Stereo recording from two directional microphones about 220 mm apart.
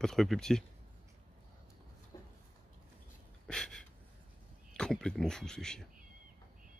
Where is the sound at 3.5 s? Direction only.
5° left (ahead or behind).